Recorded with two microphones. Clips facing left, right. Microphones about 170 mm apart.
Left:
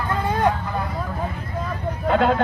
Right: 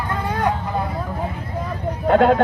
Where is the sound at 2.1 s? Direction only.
50° right (ahead or behind).